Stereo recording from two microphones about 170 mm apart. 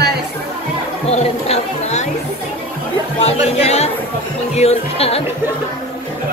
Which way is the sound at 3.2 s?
40° left (ahead or behind).